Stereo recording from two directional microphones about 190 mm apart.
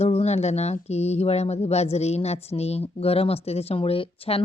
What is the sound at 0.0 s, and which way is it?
A woman's voice, 35° left (ahead or behind).